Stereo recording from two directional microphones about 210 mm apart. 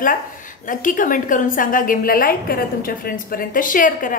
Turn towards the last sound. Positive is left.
turn(degrees=40)  # may be behind; listen again after turning